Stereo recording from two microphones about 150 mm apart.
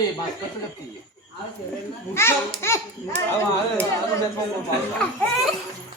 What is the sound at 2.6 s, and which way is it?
Speech, 15° left (ahead or behind).